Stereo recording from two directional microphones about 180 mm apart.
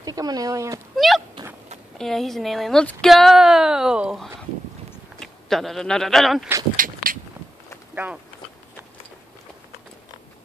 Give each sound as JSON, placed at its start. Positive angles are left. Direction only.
{"t": 0.0, "sound": "speech", "side_deg": -20}
{"t": 0.9, "sound": "speech", "side_deg": 0}
{"t": 6.8, "sound": "a sound", "side_deg": -50}
{"t": 7.9, "sound": "speech", "side_deg": -10}